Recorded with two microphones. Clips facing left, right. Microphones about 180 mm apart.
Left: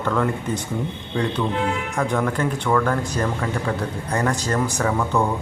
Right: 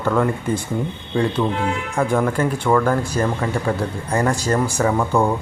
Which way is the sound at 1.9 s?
10° right (ahead or behind).